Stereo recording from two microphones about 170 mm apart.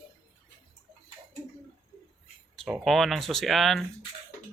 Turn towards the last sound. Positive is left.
turn(degrees=0)  # may be behind; listen again after turning